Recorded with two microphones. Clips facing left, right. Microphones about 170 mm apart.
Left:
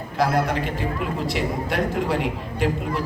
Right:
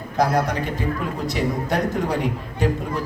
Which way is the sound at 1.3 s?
40° right (ahead or behind).